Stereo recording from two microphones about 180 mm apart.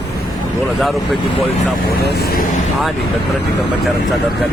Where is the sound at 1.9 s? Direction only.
65° left (ahead or behind).